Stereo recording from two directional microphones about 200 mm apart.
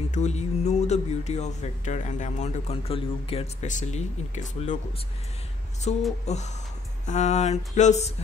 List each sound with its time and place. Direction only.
0.1 s speech: 35° left (ahead or behind)
5.9 s speech: 30° left (ahead or behind)